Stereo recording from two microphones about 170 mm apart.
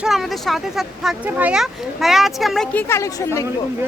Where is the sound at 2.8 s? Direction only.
15° left (ahead or behind).